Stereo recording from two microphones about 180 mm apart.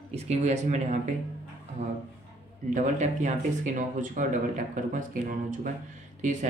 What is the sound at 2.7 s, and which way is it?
Speech, 45° right (ahead or behind).